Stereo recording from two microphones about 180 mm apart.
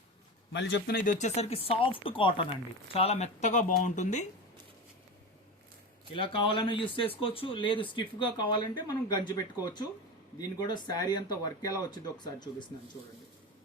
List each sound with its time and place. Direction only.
0.5 s speech: 75° left (ahead or behind); by 4.3 s 40° left (ahead or behind)
6.1 s speech: 30° left (ahead or behind)
10.3 s speech: 25° left (ahead or behind)